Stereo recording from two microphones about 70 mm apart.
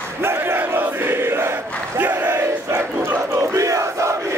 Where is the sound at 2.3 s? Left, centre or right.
Right.